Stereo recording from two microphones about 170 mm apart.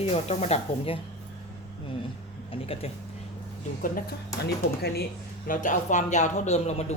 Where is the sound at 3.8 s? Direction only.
55° left (ahead or behind).